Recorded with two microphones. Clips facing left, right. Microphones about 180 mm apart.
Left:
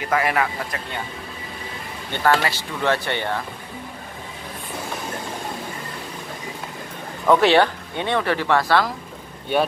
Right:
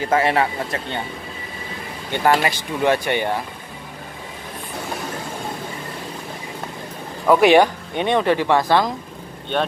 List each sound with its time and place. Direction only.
0.0 s speech: 30° right (ahead or behind)
2.1 s speech: 15° right (ahead or behind)
7.2 s speech: 10° right (ahead or behind)
9.5 s speech: 10° left (ahead or behind)